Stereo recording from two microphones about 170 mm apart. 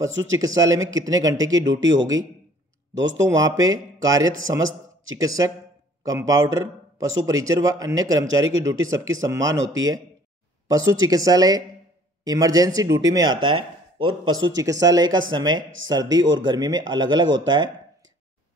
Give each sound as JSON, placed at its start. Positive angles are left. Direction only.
{"t": 0.6, "sound": "speech", "side_deg": -20}
{"t": 1.7, "sound": "speech", "side_deg": -90}
{"t": 3.3, "sound": "a man's voice", "side_deg": -20}
{"t": 10.7, "sound": "speech", "side_deg": -20}